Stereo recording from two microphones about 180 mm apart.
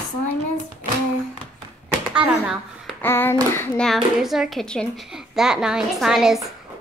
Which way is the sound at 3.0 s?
10° left (ahead or behind).